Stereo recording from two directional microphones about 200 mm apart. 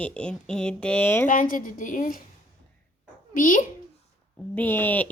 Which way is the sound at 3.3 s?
40° left (ahead or behind).